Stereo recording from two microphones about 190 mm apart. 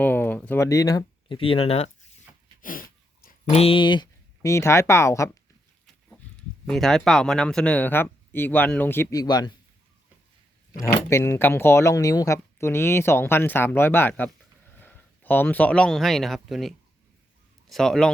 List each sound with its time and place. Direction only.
0.0 s speech: 10° left (ahead or behind); by 1.9 s 30° left (ahead or behind)
2.6 s a sound: 45° left (ahead or behind)
3.2 s speech: 35° left (ahead or behind); by 5.4 s 15° left (ahead or behind)
5.8 s speech: 5° left (ahead or behind); by 9.5 s 20° left (ahead or behind)
11.1 s a man's voice: 10° left (ahead or behind)